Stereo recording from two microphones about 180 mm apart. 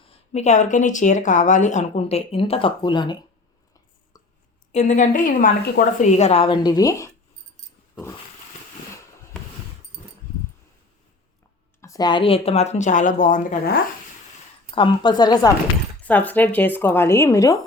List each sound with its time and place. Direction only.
0.0 s speech: 35° left (ahead or behind)
4.7 s speech: 40° left (ahead or behind); by 7.1 s 20° left (ahead or behind)
11.8 s speech: 20° left (ahead or behind); by 13.7 s 50° left (ahead or behind)
14.8 s a woman's voice: 25° left (ahead or behind)
16.0 s speech: 10° left (ahead or behind)